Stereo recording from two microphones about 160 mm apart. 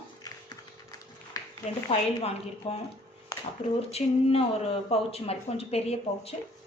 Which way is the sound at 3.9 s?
40° left (ahead or behind).